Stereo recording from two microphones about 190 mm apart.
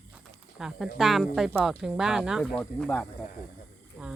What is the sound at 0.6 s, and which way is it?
Speech, centre (ahead or behind).